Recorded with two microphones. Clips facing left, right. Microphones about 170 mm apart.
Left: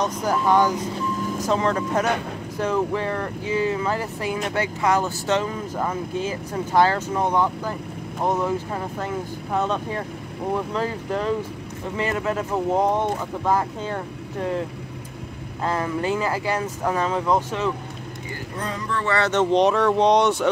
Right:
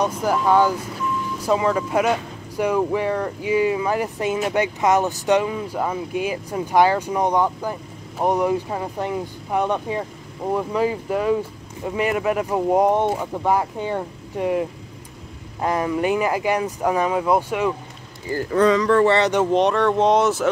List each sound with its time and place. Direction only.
0.0 s speech: 10° right (ahead or behind)
15.6 s speech: 15° right (ahead or behind)
18.5 s speech: 90° right
19.0 s speech: 20° right (ahead or behind)
19.3 s speech: 5° right (ahead or behind)